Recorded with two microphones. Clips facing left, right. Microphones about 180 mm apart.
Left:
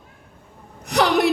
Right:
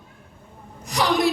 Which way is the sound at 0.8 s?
65° left (ahead or behind).